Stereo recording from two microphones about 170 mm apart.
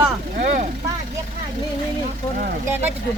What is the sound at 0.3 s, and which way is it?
Vehicle, 50° right (ahead or behind).